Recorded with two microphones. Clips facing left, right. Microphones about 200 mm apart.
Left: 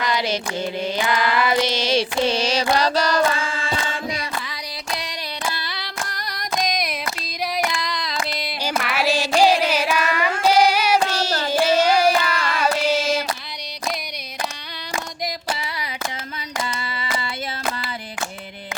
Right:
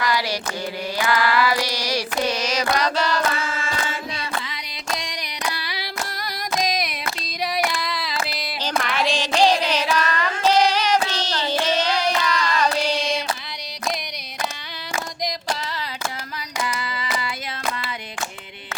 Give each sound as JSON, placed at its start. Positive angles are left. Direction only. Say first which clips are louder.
{"t": 0.0, "sound": "carnatic music", "louder": "left 1 dB", "side_deg": 20}
{"t": 0.9, "sound": "mantra", "louder": "right 3 dB", "side_deg": 20}
{"t": 4.9, "sound": "a sound", "louder": "left 1 dB", "side_deg": -15}
{"t": 7.4, "sound": "female singing", "louder": "even", "side_deg": 0}
{"t": 15.5, "sound": "a sound", "louder": "right 1 dB", "side_deg": 10}
{"t": 16.6, "sound": "hands", "louder": "right 1 dB", "side_deg": 25}